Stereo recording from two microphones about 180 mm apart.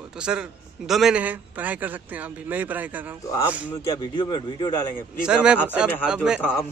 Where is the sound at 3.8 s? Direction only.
25° left (ahead or behind).